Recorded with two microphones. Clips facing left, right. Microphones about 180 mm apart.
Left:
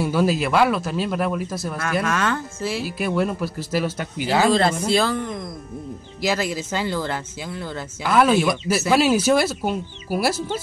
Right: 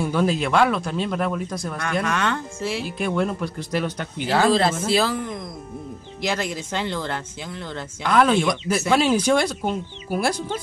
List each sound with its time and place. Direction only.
0.0 s speech: 5° left (ahead or behind)